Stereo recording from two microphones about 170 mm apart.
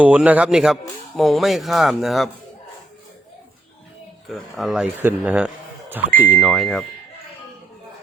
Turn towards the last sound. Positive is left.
turn(degrees=0)  # may be behind; listen again after turning